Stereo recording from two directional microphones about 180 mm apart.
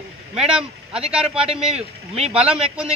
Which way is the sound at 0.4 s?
5° right (ahead or behind).